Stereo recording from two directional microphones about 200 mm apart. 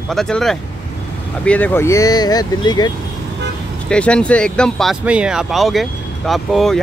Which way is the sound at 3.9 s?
5° left (ahead or behind).